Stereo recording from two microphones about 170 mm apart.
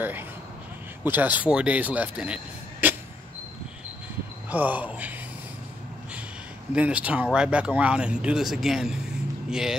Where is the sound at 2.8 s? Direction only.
10° right (ahead or behind).